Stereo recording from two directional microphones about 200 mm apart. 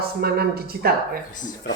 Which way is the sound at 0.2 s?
50° right (ahead or behind).